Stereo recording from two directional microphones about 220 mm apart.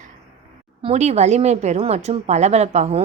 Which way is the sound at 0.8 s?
30° right (ahead or behind).